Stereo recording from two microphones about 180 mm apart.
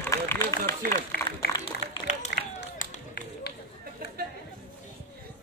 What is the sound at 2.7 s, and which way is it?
Run, 60° left (ahead or behind).